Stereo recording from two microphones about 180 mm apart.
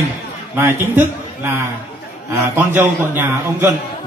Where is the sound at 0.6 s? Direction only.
10° right (ahead or behind).